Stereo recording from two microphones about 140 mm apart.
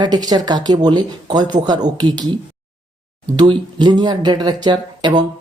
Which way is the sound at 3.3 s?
30° right (ahead or behind).